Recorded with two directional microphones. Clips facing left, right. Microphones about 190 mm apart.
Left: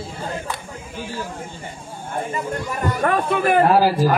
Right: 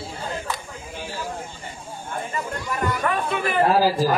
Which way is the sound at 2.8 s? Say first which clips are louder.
Left 4 dB; 50° left (ahead or behind).